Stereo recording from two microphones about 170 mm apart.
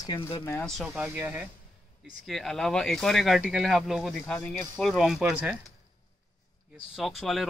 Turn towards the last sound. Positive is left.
turn(degrees=0)  # may be behind; listen again after turning